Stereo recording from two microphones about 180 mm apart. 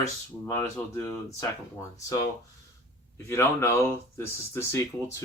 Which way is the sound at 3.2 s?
10° left (ahead or behind).